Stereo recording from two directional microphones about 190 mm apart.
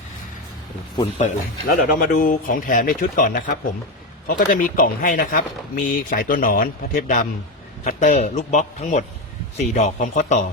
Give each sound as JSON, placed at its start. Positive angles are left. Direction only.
{"t": 0.9, "sound": "a man's voice", "side_deg": 30}
{"t": 1.6, "sound": "a man's voice", "side_deg": 50}